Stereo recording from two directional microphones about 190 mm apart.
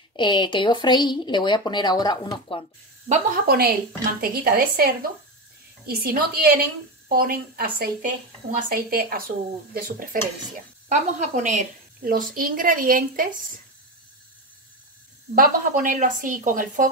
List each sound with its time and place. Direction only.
0.1 s speech: 25° left (ahead or behind)
3.1 s a woman's voice: 45° right (ahead or behind)
15.3 s a woman's voice: 45° right (ahead or behind)